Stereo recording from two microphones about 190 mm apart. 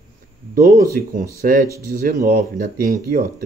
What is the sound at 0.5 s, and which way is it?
Speech, 50° right (ahead or behind).